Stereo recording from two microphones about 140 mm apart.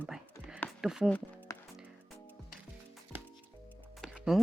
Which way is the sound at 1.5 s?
25° left (ahead or behind).